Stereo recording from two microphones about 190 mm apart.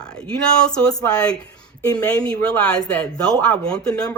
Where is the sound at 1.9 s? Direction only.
20° left (ahead or behind).